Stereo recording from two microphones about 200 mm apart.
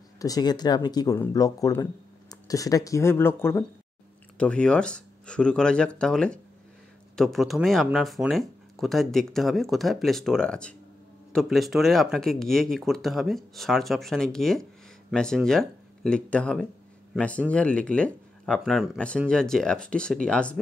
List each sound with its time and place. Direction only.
0.2 s speech: 20° left (ahead or behind)